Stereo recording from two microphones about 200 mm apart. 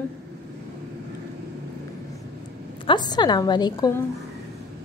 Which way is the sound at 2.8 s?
20° left (ahead or behind).